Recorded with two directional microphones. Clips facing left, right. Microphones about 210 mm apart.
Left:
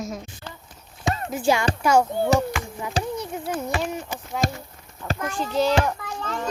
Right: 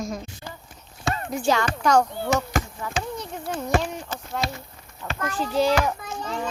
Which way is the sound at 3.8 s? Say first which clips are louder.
Left 2 dB; 10° left (ahead or behind).